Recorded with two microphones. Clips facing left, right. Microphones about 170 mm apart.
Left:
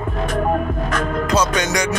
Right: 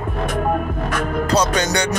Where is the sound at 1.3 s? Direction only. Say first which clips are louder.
Right 1 dB; 35° right (ahead or behind).